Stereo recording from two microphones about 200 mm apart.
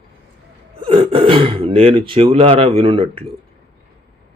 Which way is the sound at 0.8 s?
30° right (ahead or behind).